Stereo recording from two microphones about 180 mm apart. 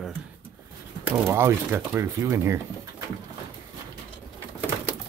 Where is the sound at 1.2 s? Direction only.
15° right (ahead or behind).